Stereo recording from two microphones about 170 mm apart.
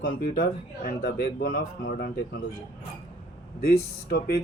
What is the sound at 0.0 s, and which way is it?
Speech, 60° left (ahead or behind).